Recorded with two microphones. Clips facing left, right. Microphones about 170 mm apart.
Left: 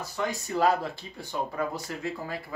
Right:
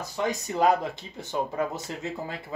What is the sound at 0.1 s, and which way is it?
Speech, 20° right (ahead or behind).